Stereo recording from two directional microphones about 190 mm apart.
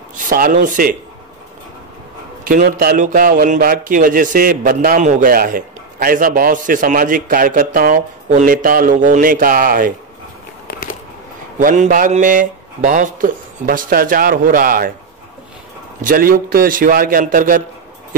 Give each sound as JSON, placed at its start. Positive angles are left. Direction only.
{"t": 0.2, "sound": "a man's voice", "side_deg": -45}
{"t": 2.4, "sound": "a man's voice", "side_deg": -45}
{"t": 11.5, "sound": "a man's voice", "side_deg": -40}
{"t": 16.0, "sound": "a man's voice", "side_deg": -45}